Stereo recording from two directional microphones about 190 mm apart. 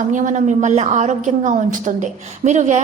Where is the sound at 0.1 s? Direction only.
40° right (ahead or behind).